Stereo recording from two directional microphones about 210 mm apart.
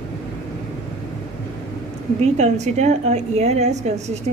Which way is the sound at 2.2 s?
30° right (ahead or behind).